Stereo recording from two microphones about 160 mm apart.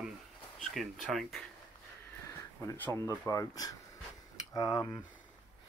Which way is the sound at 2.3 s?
15° left (ahead or behind).